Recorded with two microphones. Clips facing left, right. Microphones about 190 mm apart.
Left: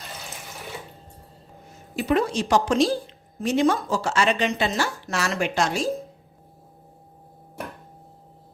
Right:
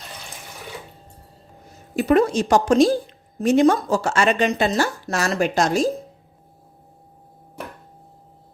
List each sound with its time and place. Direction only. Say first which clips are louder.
2.0 s a woman's voice: right 5 dB; 45° right (ahead or behind)